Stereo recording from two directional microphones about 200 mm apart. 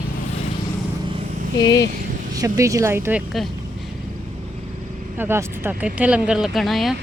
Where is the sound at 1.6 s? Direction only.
20° left (ahead or behind).